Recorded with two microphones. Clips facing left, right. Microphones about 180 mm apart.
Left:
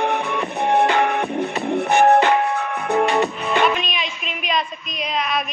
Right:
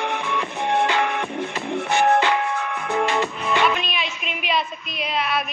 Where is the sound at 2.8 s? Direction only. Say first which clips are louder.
Left 5 dB; 35° left (ahead or behind).